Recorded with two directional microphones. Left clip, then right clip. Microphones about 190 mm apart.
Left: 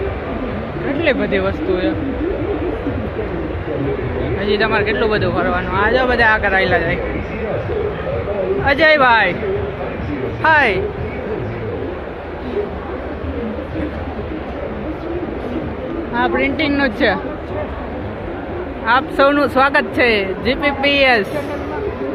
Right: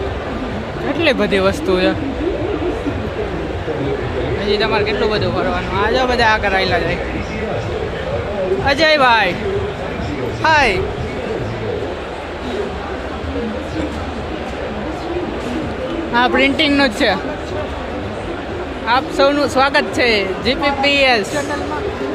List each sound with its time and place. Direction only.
1.0 s speech: 30° right (ahead or behind)
4.4 s speech: 10° right (ahead or behind)
8.6 s speech: 15° right (ahead or behind)
10.4 s speech: 10° right (ahead or behind)
16.1 s a woman's voice: 30° right (ahead or behind)
18.9 s speech: 5° right (ahead or behind)